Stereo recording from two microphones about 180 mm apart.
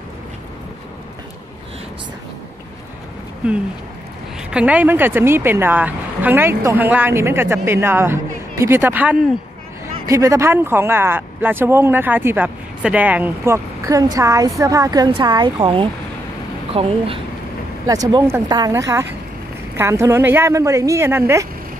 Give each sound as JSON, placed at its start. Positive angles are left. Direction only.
{"t": 3.4, "sound": "speech", "side_deg": -5}
{"t": 17.8, "sound": "speech", "side_deg": -20}